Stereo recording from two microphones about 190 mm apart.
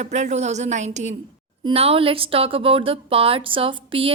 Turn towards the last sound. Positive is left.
turn(degrees=-30)  # may be behind; listen again after turning